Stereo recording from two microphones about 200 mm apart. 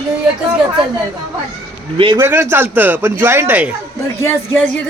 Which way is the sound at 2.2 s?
10° right (ahead or behind).